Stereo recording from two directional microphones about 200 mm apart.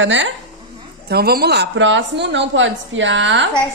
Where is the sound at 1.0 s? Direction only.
50° right (ahead or behind).